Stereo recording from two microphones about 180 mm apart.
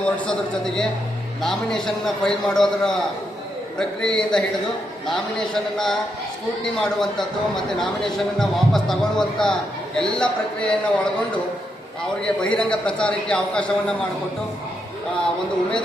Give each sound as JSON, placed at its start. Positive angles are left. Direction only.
{"t": 0.0, "sound": "a man's voice", "side_deg": 5}